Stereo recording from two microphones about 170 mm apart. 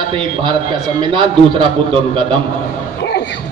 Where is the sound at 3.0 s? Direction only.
80° left.